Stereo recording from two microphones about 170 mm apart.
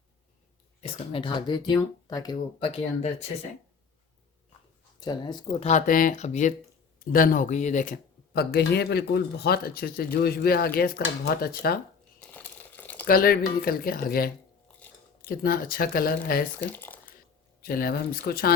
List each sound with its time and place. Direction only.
0.8 s speech: 35° left (ahead or behind)
4.9 s speech: 25° left (ahead or behind); by 6.5 s 45° left (ahead or behind)
7.0 s speech: 55° left (ahead or behind)
8.3 s speech: 70° left (ahead or behind)
12.3 s crumpling: 10° left (ahead or behind)
13.1 s speech: 60° left (ahead or behind)
16.6 s speech: 10° left (ahead or behind)
17.6 s speech: 60° left (ahead or behind)